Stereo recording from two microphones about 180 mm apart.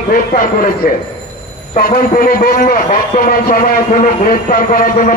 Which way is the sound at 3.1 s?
55° left (ahead or behind).